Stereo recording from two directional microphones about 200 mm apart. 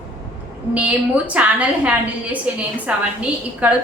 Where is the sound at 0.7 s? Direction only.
5° right (ahead or behind).